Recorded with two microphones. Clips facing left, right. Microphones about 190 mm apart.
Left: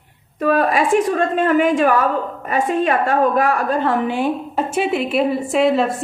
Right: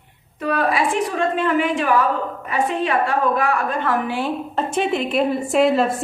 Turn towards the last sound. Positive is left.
turn(degrees=0)  # may be behind; listen again after turning